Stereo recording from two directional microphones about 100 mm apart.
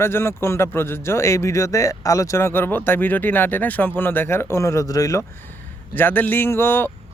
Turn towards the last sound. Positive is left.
turn(degrees=25)  # may be behind; listen again after turning